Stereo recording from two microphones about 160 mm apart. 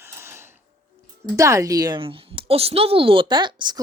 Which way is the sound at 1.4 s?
20° right (ahead or behind).